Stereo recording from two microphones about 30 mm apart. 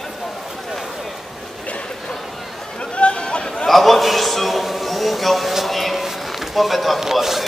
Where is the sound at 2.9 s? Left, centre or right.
Left.